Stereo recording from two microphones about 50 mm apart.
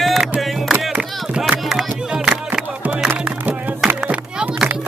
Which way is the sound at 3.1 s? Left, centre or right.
Right.